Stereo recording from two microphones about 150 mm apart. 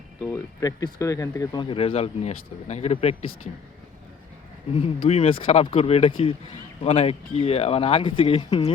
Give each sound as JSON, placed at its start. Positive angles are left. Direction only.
{"t": 0.3, "sound": "speech", "side_deg": 25}
{"t": 1.7, "sound": "speech", "side_deg": 40}
{"t": 4.7, "sound": "speech", "side_deg": 40}